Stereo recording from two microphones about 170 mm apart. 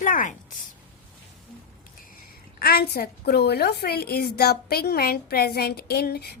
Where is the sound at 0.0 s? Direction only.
50° left (ahead or behind).